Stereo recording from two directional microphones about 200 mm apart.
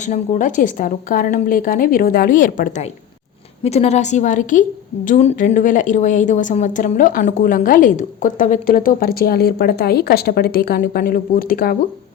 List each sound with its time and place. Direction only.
0.0 s a woman's voice: 40° left (ahead or behind)
3.6 s a woman's voice: 30° left (ahead or behind); by 11.8 s 50° left (ahead or behind)